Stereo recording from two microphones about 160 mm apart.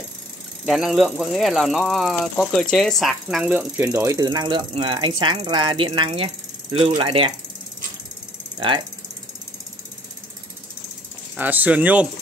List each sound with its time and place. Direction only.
0.7 s speech: centre (ahead or behind); by 7.3 s 30° right (ahead or behind)
8.5 s ratchet: 30° right (ahead or behind)
11.3 s speech: 10° right (ahead or behind)